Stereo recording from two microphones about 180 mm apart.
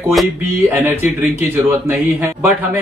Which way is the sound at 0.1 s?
Centre (ahead or behind).